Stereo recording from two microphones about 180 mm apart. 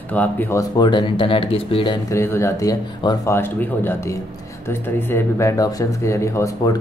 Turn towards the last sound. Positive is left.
turn(degrees=15)  # may be behind; listen again after turning